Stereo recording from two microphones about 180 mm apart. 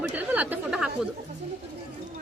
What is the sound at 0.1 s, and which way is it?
Chatter, 10° right (ahead or behind).